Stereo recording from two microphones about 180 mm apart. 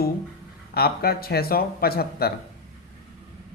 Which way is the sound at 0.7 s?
60° left (ahead or behind).